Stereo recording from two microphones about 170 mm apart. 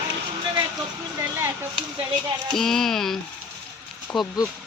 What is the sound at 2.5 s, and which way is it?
Speech, centre (ahead or behind).